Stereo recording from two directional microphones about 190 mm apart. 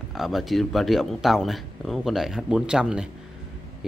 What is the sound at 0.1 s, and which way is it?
Speech, centre (ahead or behind).